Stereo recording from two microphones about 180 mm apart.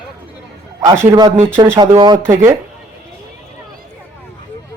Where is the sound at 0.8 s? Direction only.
15° right (ahead or behind).